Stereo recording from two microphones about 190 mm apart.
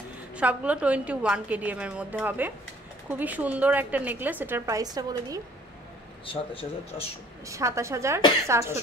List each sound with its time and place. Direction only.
0.4 s a woman's voice: 5° right (ahead or behind)
6.2 s speech: 30° left (ahead or behind)
7.4 s a woman's voice: 15° right (ahead or behind)